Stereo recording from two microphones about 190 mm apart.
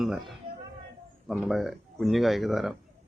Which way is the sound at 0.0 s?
Centre (ahead or behind).